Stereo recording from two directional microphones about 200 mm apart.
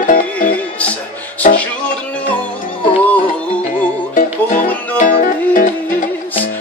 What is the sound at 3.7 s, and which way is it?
Music, 40° left (ahead or behind).